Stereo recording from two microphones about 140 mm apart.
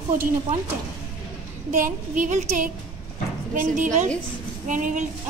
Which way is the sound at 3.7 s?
60° right (ahead or behind).